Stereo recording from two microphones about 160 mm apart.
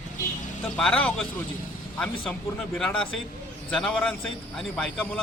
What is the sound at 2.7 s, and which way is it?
A man's voice, 5° left (ahead or behind).